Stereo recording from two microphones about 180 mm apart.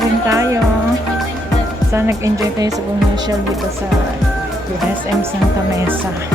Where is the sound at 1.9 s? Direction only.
15° right (ahead or behind).